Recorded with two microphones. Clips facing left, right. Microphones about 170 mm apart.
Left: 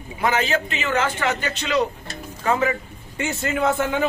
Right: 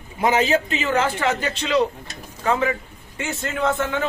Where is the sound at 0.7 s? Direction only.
30° right (ahead or behind).